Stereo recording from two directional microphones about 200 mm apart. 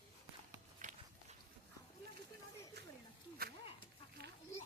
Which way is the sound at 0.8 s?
35° right (ahead or behind).